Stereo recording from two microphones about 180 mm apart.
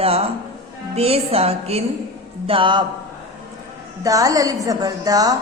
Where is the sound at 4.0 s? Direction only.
20° right (ahead or behind).